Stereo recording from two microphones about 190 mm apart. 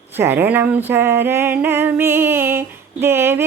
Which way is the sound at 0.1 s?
10° right (ahead or behind).